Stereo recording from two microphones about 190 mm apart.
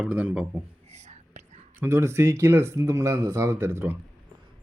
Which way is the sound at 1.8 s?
15° right (ahead or behind).